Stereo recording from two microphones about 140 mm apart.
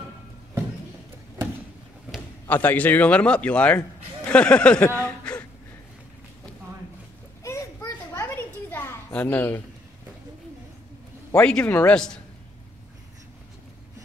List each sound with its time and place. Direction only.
2.4 s a man's voice: 10° left (ahead or behind)
7.4 s a sound: 20° left (ahead or behind)
11.3 s a man's voice: 10° left (ahead or behind)